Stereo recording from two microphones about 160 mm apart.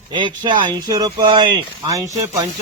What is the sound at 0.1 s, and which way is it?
Speech, 30° right (ahead or behind).